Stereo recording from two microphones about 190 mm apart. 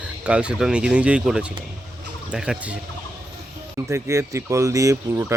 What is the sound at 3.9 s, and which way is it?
Speech, 15° right (ahead or behind).